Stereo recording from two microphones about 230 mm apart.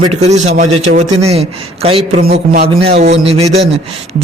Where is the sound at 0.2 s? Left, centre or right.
Right.